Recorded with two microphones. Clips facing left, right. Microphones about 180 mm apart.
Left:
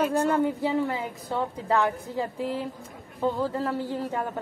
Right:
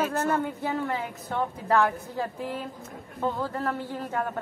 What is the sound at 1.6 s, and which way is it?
Speech, 15° left (ahead or behind).